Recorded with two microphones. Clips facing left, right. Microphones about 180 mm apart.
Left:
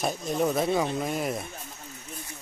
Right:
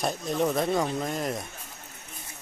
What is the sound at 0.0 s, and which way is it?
Speech, centre (ahead or behind).